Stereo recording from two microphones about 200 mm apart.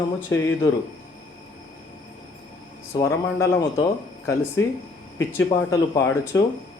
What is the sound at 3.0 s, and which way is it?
Speech, 15° left (ahead or behind).